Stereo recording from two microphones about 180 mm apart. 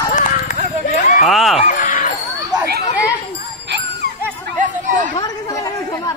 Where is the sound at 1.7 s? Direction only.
45° left (ahead or behind).